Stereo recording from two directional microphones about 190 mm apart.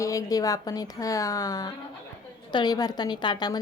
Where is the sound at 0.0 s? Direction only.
15° left (ahead or behind).